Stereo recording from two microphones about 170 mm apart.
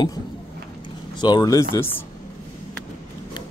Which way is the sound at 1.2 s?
25° left (ahead or behind).